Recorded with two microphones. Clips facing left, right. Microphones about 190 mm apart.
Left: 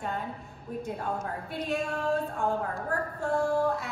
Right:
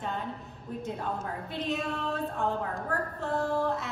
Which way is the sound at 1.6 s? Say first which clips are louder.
Left 2 dB; 10° left (ahead or behind).